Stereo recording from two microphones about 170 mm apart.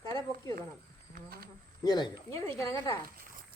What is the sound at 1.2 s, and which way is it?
Speech, 60° right (ahead or behind).